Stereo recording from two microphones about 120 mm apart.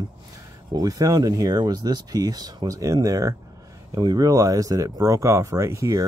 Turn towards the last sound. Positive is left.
turn(degrees=-25)  # may be behind; listen again after turning